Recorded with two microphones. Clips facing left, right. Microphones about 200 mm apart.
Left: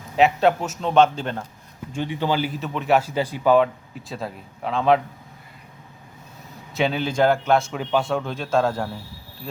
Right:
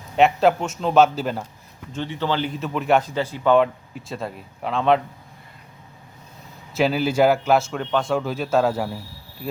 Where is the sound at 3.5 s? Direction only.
Centre (ahead or behind).